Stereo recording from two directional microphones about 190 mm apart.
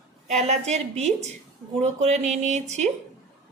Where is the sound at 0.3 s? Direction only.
35° right (ahead or behind).